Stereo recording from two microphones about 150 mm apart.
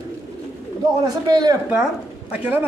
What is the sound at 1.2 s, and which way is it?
Speech, 30° right (ahead or behind).